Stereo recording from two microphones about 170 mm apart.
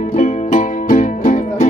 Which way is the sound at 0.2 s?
45° left (ahead or behind).